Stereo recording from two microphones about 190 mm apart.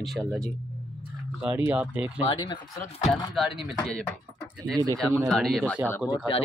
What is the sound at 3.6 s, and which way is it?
Speech, 5° left (ahead or behind).